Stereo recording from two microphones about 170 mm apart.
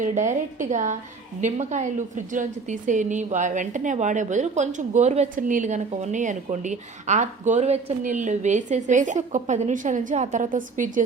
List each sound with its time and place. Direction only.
0.0 s a woman's voice: 45° right (ahead or behind)